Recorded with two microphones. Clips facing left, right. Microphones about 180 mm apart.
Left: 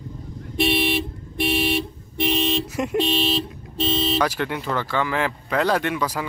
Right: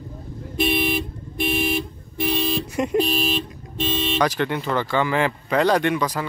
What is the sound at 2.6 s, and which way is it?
Vehicle, centre (ahead or behind).